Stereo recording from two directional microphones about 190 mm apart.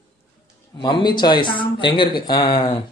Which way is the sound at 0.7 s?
25° left (ahead or behind).